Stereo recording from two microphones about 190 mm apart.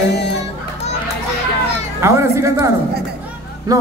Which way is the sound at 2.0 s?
15° right (ahead or behind).